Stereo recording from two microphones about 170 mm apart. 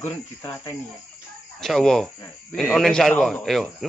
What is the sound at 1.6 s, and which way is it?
A man's voice, centre (ahead or behind).